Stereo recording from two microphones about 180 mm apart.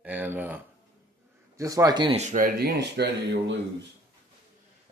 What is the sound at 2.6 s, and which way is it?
Speech, 70° right (ahead or behind).